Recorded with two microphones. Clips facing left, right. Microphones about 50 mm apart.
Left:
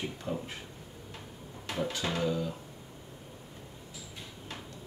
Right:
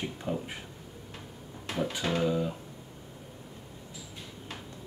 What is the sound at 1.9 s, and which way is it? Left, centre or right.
Speech, centre.